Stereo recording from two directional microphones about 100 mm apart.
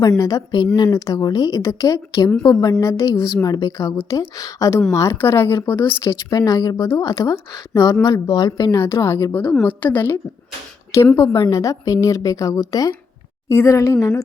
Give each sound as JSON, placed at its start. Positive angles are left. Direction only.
{"t": 0.2, "sound": "speech", "side_deg": 35}
{"t": 6.0, "sound": "speech", "side_deg": 40}
{"t": 8.7, "sound": "speech", "side_deg": 30}
{"t": 9.3, "sound": "a woman's voice", "side_deg": 20}